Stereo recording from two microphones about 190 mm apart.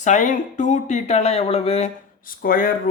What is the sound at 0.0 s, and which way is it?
Speech, 40° left (ahead or behind).